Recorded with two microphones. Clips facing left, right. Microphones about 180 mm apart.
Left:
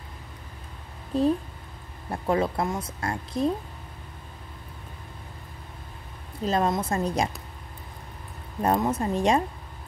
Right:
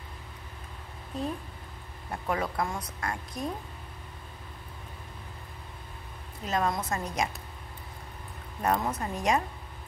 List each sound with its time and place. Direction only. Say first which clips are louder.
2.0 s speech: left 6 dB; 30° left (ahead or behind)
6.4 s a woman's voice: left 5 dB; 30° left (ahead or behind)
8.6 s speech: left 5 dB; 25° left (ahead or behind)